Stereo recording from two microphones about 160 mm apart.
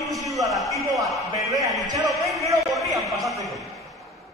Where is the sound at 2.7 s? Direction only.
Centre (ahead or behind).